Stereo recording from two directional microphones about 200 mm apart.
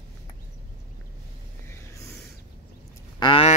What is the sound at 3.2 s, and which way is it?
Speech, 30° left (ahead or behind).